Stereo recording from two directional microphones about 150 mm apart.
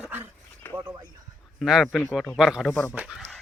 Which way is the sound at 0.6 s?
15° left (ahead or behind).